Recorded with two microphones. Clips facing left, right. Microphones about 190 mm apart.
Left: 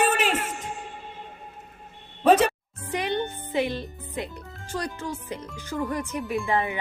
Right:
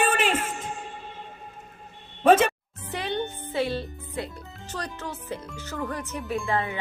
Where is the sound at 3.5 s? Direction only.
15° left (ahead or behind).